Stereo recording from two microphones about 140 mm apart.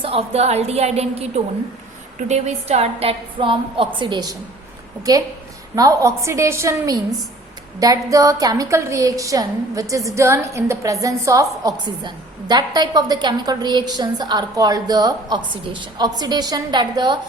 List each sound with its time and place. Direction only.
0.0 s a woman's voice: 45° right (ahead or behind)